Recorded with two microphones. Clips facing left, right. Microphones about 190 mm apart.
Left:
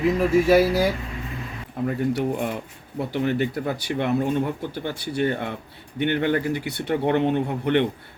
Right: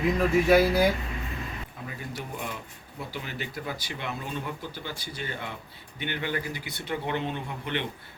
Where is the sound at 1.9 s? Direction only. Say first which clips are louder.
Left 15 dB; 55° left (ahead or behind).